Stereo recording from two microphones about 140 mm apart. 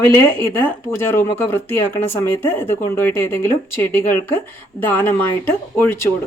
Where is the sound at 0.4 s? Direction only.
15° left (ahead or behind).